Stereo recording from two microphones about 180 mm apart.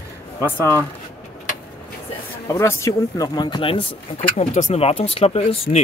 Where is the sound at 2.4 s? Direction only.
15° left (ahead or behind).